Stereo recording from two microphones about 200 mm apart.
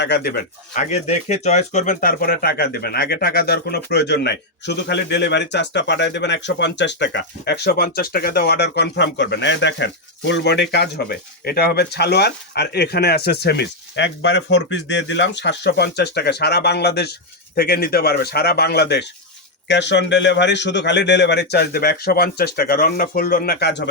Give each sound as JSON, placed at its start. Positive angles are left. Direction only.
{"t": 0.0, "sound": "speech", "side_deg": 55}